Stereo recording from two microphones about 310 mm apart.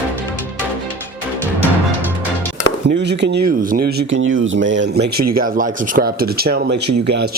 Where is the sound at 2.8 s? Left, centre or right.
Right.